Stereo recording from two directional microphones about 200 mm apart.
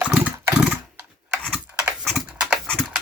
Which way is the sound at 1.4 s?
5° right (ahead or behind).